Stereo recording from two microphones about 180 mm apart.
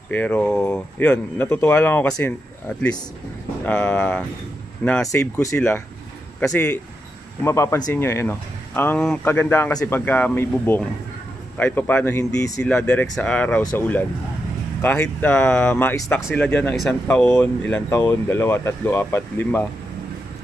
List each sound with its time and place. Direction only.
0.1 s speech: 10° left (ahead or behind)
3.6 s speech: 5° left (ahead or behind)